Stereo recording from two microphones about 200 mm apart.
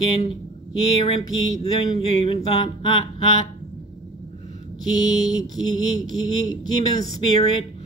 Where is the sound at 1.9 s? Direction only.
25° left (ahead or behind).